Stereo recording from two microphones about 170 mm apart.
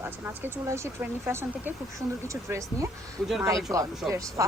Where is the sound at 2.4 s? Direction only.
15° right (ahead or behind).